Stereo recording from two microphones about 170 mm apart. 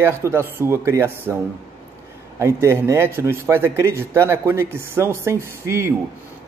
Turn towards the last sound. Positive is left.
turn(degrees=-15)  # may be behind; listen again after turning